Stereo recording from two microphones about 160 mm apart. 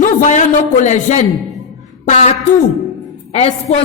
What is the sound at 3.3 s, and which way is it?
Speech, 40° left (ahead or behind).